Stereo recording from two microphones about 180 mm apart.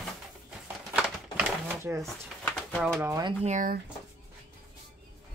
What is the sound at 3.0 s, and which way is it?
Speech, 20° right (ahead or behind).